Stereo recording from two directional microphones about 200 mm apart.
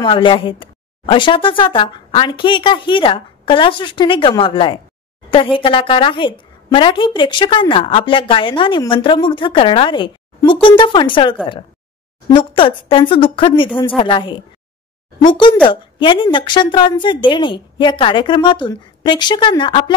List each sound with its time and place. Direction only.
0.0 s a woman's voice: 25° left (ahead or behind)